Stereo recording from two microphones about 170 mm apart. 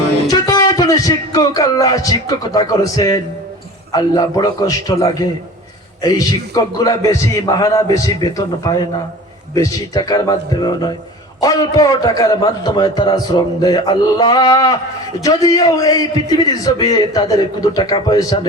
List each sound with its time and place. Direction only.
0.3 s music: 20° left (ahead or behind)
3.9 s a man's voice: 20° left (ahead or behind)